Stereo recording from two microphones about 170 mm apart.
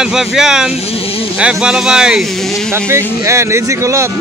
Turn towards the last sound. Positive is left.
turn(degrees=-15)  # may be behind; listen again after turning